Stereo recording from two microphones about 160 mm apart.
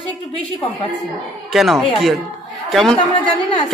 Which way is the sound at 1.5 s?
Centre (ahead or behind).